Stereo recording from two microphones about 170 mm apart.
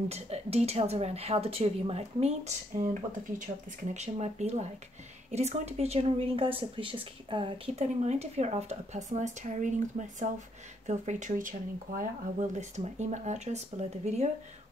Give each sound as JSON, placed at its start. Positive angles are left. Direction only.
{"t": 0.1, "sound": "a woman's voice", "side_deg": -40}